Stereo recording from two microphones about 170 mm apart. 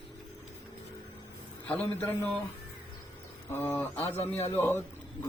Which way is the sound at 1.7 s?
10° left (ahead or behind).